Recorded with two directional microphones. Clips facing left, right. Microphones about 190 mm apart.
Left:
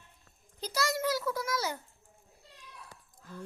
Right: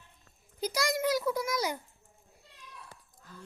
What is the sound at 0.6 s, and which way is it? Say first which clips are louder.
A child's voice: right 2 dB; 15° right (ahead or behind).